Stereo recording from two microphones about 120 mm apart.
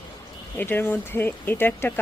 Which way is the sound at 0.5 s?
15° left (ahead or behind).